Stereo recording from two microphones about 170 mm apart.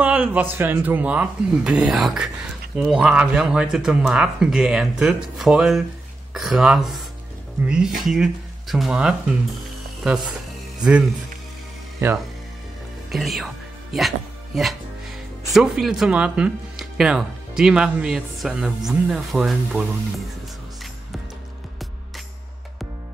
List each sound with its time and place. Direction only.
0.0 s speech: 10° right (ahead or behind)
10.8 s speech: 5° right (ahead or behind)
13.1 s speech: centre (ahead or behind)
13.9 s music: centre (ahead or behind)
15.5 s speech: 5° right (ahead or behind)